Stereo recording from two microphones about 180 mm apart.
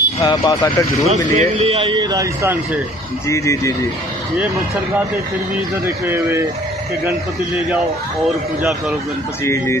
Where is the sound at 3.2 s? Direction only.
15° left (ahead or behind).